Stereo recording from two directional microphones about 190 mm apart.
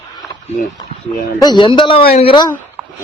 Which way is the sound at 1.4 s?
20° left (ahead or behind).